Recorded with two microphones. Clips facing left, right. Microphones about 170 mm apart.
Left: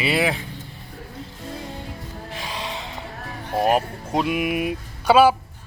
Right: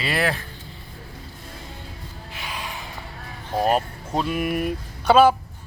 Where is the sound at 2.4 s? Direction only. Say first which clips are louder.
Left 2 dB; 30° left (ahead or behind).